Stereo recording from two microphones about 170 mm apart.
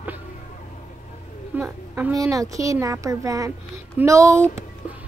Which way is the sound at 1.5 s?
10° right (ahead or behind).